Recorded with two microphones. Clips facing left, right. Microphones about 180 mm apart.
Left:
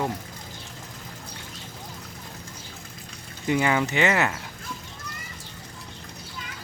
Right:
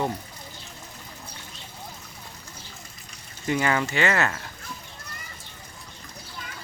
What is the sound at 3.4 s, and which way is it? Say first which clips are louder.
Speech: left 2 dB; 15° left (ahead or behind).